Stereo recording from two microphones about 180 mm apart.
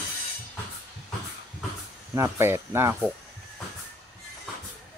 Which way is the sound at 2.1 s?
15° right (ahead or behind).